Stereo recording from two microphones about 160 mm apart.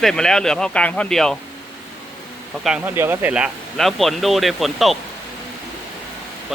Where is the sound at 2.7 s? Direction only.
10° right (ahead or behind).